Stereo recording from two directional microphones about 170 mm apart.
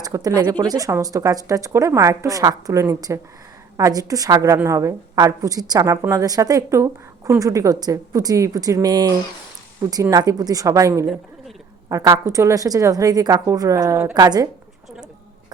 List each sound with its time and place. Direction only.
0.0 s a woman's voice: 20° right (ahead or behind)